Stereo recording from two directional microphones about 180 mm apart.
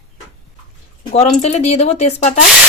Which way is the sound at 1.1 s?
40° left (ahead or behind).